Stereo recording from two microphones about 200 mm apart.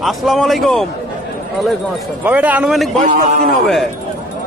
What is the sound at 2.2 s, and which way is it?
Speech, 10° right (ahead or behind).